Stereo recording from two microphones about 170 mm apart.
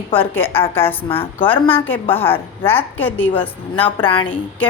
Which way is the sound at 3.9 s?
30° left (ahead or behind).